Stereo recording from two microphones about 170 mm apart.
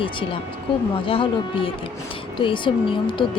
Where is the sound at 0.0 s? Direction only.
30° left (ahead or behind).